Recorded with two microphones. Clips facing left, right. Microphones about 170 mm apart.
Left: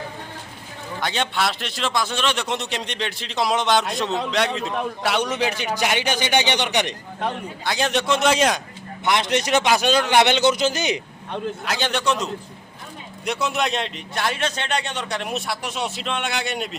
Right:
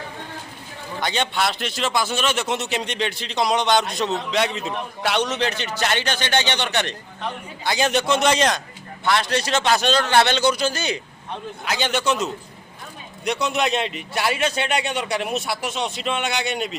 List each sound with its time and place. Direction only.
1.0 s speech: centre (ahead or behind)
7.6 s speech: centre (ahead or behind)
9.0 s a man's voice: 20° left (ahead or behind)
11.6 s speech: centre (ahead or behind)